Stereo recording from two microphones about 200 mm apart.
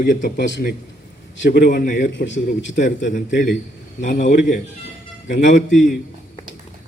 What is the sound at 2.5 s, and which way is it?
A man's voice, 40° left (ahead or behind).